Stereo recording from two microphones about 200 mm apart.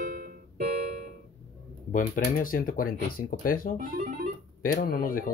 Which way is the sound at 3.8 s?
45° right (ahead or behind).